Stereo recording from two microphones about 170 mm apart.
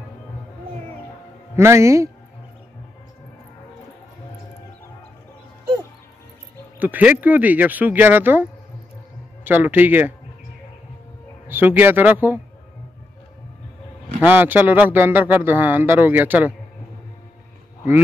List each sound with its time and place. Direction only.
1.6 s speech: 15° right (ahead or behind)
6.8 s speech: 10° right (ahead or behind)
11.4 s speech: 10° right (ahead or behind)
14.2 s speech: 10° right (ahead or behind)